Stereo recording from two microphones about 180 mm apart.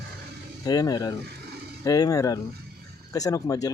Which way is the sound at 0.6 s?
20° left (ahead or behind).